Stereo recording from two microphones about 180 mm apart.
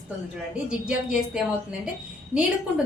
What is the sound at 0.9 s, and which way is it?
A woman's voice, 5° right (ahead or behind).